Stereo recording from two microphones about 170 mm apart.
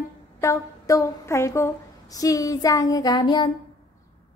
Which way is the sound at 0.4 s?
20° left (ahead or behind).